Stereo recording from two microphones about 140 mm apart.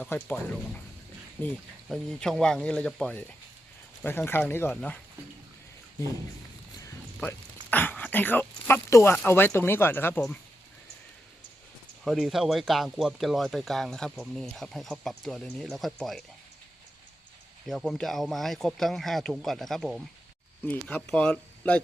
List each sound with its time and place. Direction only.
0.1 s speech: 20° left (ahead or behind)
1.4 s speech: 15° left (ahead or behind)
7.2 s a sound: 10° left (ahead or behind)
9.1 s speech: 15° left (ahead or behind)
12.0 s speech: centre (ahead or behind)
17.7 s speech: centre (ahead or behind)